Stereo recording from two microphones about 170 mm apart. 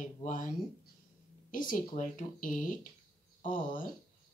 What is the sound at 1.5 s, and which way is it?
Speech, 50° left (ahead or behind).